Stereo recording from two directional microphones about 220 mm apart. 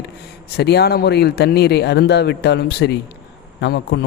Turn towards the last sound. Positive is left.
turn(degrees=50)  # may be behind; listen again after turning